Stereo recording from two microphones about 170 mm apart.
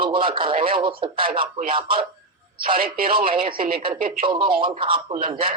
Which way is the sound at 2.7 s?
55° right (ahead or behind).